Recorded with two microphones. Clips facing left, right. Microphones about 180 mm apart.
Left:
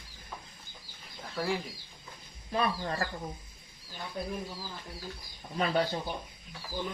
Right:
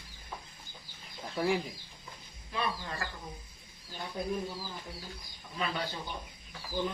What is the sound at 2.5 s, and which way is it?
Speech, 40° left (ahead or behind).